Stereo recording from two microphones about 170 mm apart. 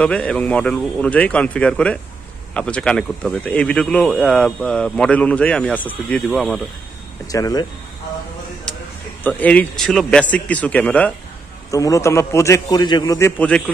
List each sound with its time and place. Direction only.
0.0 s speech: 5° left (ahead or behind)
7.2 s a man's voice: 20° left (ahead or behind)
9.2 s speech: 10° left (ahead or behind)
11.7 s a man's voice: 20° left (ahead or behind)
13.2 s speech: 10° left (ahead or behind)